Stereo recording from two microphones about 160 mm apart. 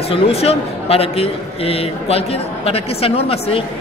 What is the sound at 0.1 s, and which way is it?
A man's voice, 40° left (ahead or behind).